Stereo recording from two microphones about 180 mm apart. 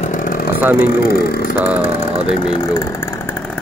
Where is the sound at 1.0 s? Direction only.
60° left (ahead or behind).